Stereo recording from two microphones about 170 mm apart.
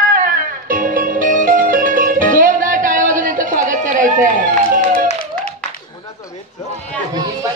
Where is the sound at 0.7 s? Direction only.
55° right (ahead or behind).